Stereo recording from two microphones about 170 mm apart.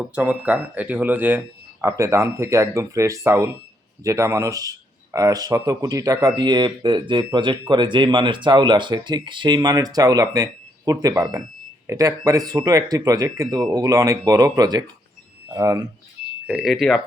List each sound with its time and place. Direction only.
0.0 s speech: 10° right (ahead or behind)
16.5 s speech: centre (ahead or behind)